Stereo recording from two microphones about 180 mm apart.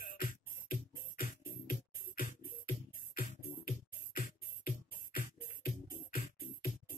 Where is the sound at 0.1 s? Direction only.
50° left (ahead or behind).